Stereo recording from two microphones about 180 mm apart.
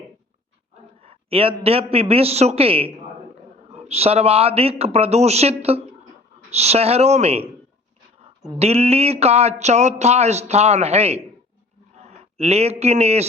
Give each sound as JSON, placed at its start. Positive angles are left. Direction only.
{"t": 1.0, "sound": "a sound", "side_deg": -30}
{"t": 1.6, "sound": "speech", "side_deg": -35}
{"t": 8.5, "sound": "a man's voice", "side_deg": -35}